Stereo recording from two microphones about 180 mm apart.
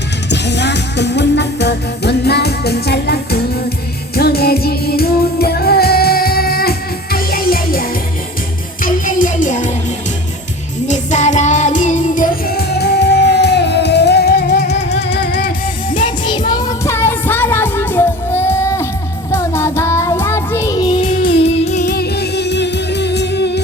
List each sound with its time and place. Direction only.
0.3 s music: 70° left (ahead or behind); by 9.7 s 45° left (ahead or behind)
10.8 s music: 40° left (ahead or behind); by 15.5 s 60° left (ahead or behind)
16.0 s music: 25° left (ahead or behind)
21.0 s music: 45° left (ahead or behind)
21.8 s music: 65° left (ahead or behind)